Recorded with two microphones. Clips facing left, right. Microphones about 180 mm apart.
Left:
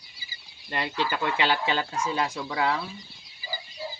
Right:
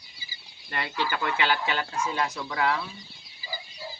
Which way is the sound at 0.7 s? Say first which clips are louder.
Left 1 dB; 25° left (ahead or behind).